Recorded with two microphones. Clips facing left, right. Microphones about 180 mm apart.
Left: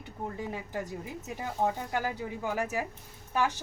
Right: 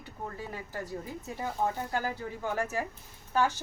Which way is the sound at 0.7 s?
20° left (ahead or behind).